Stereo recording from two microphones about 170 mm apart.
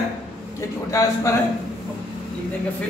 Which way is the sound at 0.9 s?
15° left (ahead or behind).